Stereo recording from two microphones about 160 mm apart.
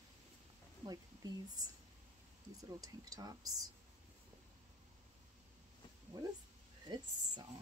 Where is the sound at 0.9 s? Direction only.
25° right (ahead or behind).